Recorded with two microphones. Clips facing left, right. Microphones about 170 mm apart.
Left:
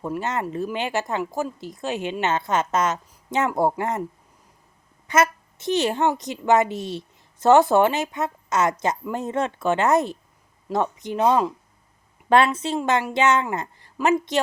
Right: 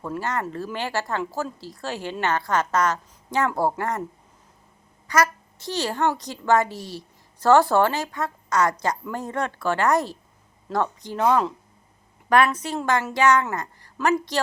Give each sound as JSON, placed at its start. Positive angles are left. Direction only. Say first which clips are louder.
{"t": 0.0, "sound": "a woman's voice", "louder": "left 1 dB", "side_deg": 20}
{"t": 5.0, "sound": "a woman's voice", "louder": "left 1 dB", "side_deg": 25}